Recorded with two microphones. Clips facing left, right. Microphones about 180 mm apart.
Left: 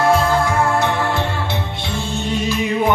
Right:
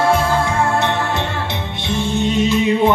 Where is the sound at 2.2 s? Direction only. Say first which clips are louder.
Right 5 dB; 20° right (ahead or behind).